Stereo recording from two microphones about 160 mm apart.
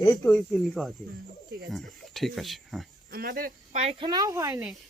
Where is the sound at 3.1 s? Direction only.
70° right (ahead or behind).